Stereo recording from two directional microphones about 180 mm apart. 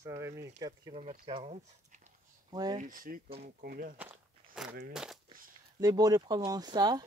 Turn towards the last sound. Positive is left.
turn(degrees=-25)  # may be behind; listen again after turning